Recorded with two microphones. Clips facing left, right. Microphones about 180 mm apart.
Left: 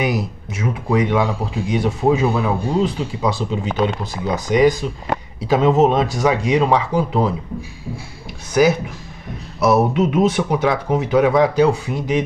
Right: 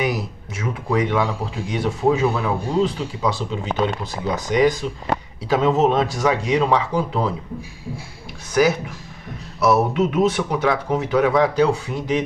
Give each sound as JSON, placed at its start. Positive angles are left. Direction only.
{"t": 0.0, "sound": "speech", "side_deg": 15}
{"t": 8.6, "sound": "speech", "side_deg": 15}